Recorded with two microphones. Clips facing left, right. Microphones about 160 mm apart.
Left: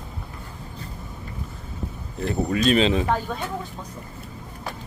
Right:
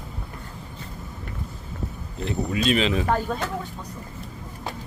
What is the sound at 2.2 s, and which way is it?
Speech, 45° left (ahead or behind).